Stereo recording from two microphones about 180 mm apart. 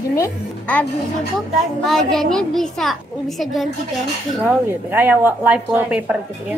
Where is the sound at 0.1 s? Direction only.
10° left (ahead or behind).